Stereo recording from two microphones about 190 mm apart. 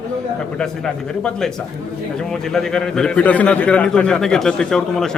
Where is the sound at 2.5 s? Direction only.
Centre (ahead or behind).